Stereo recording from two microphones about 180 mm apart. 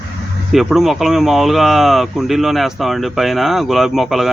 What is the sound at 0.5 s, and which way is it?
Speech, centre (ahead or behind).